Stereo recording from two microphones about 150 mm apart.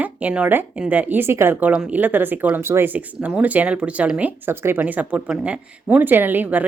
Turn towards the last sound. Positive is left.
turn(degrees=-10)  # may be behind; listen again after turning